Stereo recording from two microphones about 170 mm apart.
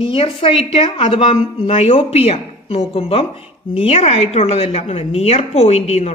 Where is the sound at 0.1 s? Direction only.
35° left (ahead or behind).